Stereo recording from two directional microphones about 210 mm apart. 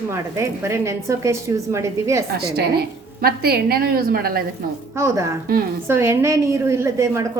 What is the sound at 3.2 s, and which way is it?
A woman's voice, 45° right (ahead or behind).